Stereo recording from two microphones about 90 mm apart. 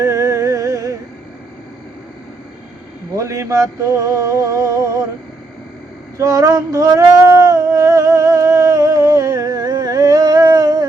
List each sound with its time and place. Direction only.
0.0 s music: 35° right (ahead or behind)
3.2 s a sound: 35° right (ahead or behind)
6.1 s male singing: 40° right (ahead or behind)